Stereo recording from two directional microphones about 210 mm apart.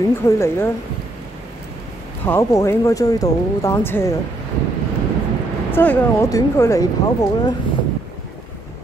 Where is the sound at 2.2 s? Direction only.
10° left (ahead or behind).